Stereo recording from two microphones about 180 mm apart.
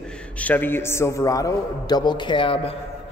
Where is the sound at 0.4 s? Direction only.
10° left (ahead or behind).